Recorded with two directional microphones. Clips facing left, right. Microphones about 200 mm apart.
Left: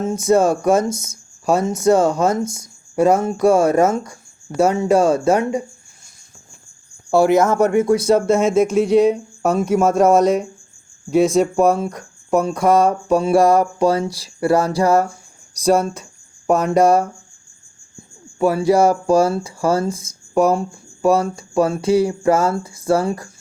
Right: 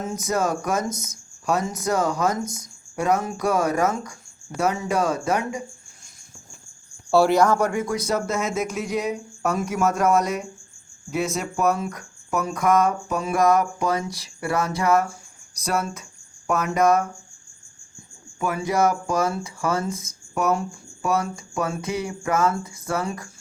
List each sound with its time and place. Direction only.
0.0 s speech: 30° left (ahead or behind)
7.1 s speech: 20° left (ahead or behind)
18.3 s speech: 35° left (ahead or behind)